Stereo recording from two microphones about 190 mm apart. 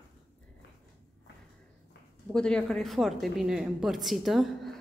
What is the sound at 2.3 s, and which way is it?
Speech, 5° left (ahead or behind).